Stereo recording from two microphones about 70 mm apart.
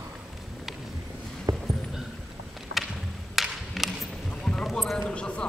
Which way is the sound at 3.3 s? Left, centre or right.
Centre.